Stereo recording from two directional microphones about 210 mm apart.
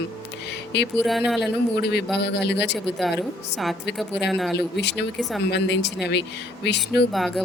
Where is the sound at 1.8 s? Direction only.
55° left (ahead or behind).